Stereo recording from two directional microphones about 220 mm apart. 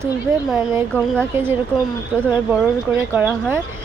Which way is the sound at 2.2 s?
5° right (ahead or behind).